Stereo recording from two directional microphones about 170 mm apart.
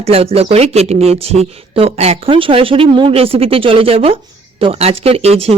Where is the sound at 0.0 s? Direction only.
35° right (ahead or behind).